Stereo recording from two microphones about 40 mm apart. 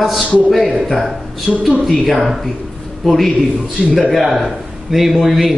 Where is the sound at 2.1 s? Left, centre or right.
Centre.